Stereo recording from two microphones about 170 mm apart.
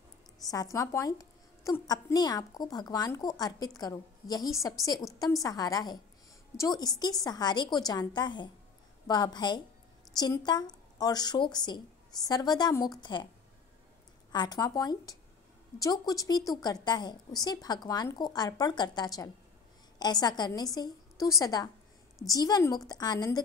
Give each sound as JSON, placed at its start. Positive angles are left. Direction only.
{"t": 0.5, "sound": "a woman's voice", "side_deg": 20}
{"t": 14.3, "sound": "a woman's voice", "side_deg": 25}